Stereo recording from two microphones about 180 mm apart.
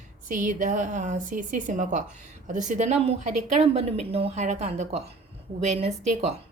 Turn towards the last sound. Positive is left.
turn(degrees=-40)  # may be behind; listen again after turning